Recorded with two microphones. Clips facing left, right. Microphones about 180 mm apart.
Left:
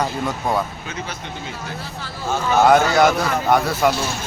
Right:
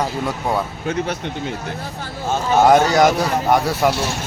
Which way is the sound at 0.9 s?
60° right (ahead or behind).